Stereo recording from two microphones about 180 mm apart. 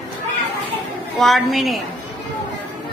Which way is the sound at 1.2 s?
Centre (ahead or behind).